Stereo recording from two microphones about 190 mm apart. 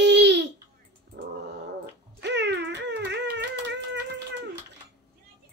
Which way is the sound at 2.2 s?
65° right (ahead or behind).